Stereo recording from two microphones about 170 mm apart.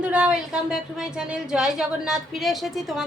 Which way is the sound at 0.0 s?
5° right (ahead or behind).